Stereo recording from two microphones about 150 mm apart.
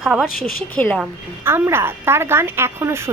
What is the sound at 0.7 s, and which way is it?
Speech, 10° left (ahead or behind).